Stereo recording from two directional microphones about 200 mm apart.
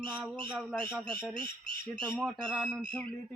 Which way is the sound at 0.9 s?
5° left (ahead or behind).